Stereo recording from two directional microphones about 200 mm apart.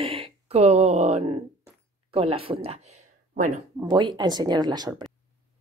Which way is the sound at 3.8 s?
20° right (ahead or behind).